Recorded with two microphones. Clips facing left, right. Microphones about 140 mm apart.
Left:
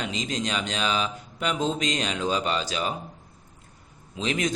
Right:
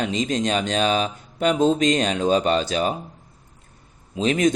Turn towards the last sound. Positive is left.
turn(degrees=-45)  # may be behind; listen again after turning